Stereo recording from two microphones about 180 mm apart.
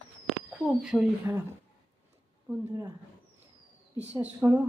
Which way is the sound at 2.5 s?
15° right (ahead or behind).